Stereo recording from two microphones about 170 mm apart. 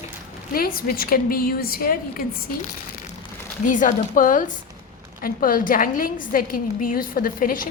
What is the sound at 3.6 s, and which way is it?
A woman's voice, 50° left (ahead or behind).